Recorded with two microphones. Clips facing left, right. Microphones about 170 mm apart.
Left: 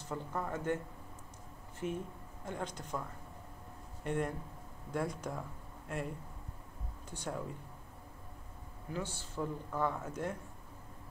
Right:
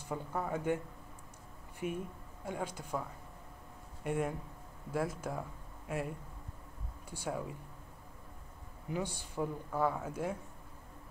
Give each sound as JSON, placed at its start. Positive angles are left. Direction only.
{"t": 0.0, "sound": "speech", "side_deg": -10}
{"t": 1.8, "sound": "speech", "side_deg": -10}
{"t": 8.9, "sound": "speech", "side_deg": -15}